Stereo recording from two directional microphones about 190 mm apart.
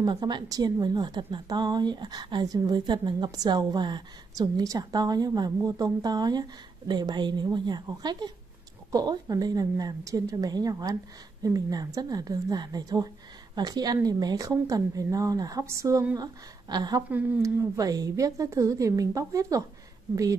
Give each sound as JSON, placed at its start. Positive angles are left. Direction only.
{"t": 0.0, "sound": "a woman's voice", "side_deg": -25}
{"t": 17.1, "sound": "a woman's voice", "side_deg": -10}